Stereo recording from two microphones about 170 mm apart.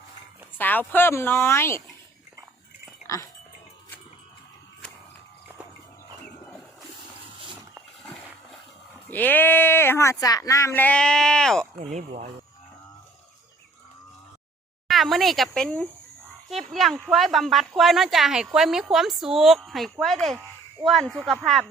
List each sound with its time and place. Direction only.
0.6 s speech: 10° left (ahead or behind)
9.0 s speech: 10° left (ahead or behind)
11.8 s speech: 40° right (ahead or behind)
14.8 s speech: centre (ahead or behind)